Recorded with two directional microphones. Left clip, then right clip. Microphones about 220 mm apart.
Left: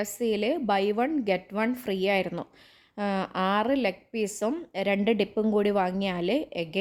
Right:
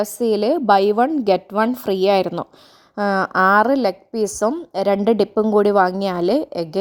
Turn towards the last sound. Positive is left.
turn(degrees=-25)  # may be behind; listen again after turning